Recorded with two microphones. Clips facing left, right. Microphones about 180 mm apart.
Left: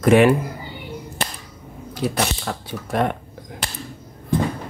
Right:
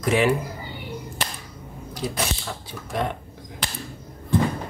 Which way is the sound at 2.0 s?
65° left (ahead or behind).